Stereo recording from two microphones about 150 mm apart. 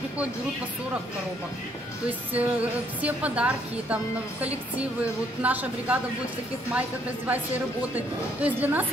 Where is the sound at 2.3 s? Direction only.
10° right (ahead or behind).